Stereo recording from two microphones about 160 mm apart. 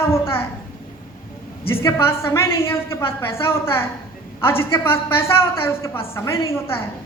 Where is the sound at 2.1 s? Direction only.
15° left (ahead or behind).